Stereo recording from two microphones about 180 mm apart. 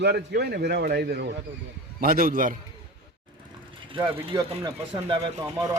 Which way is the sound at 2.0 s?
50° right (ahead or behind).